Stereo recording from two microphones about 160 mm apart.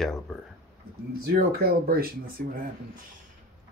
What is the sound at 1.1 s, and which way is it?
Speech, 80° right.